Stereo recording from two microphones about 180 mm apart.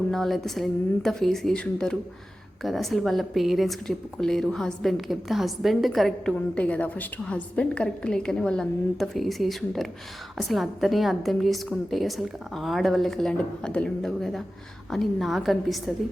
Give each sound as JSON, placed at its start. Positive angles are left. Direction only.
{"t": 0.1, "sound": "speech", "side_deg": 0}